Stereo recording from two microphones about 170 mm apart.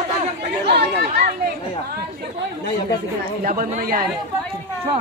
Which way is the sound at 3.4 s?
50° right (ahead or behind).